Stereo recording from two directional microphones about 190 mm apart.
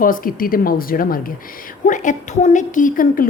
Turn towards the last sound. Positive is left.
turn(degrees=45)  # may be behind; listen again after turning